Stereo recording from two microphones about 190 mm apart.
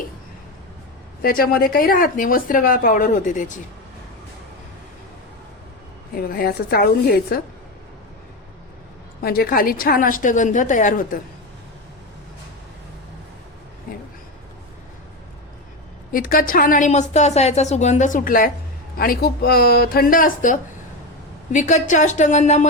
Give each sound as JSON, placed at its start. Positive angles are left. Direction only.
{"t": 1.2, "sound": "speech", "side_deg": 50}
{"t": 6.1, "sound": "speech", "side_deg": 50}
{"t": 9.2, "sound": "speech", "side_deg": 50}
{"t": 16.1, "sound": "a woman's voice", "side_deg": 50}